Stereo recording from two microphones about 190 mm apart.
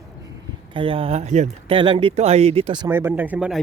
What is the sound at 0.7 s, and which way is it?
Speech, 25° right (ahead or behind).